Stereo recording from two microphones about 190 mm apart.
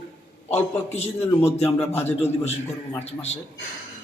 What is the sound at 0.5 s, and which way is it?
Speech, 35° left (ahead or behind).